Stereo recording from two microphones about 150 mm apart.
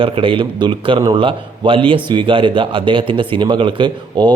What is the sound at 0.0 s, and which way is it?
Speech, 35° right (ahead or behind).